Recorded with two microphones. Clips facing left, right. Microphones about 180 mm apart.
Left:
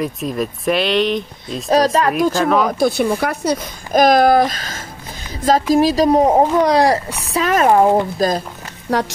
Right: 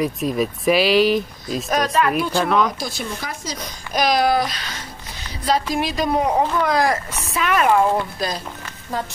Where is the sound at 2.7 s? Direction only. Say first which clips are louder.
Left 12 dB; 60° left (ahead or behind); by 8.4 s 45° left (ahead or behind).